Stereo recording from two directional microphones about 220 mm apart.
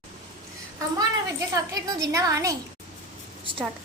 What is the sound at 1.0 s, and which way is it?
A woman's voice, 15° right (ahead or behind).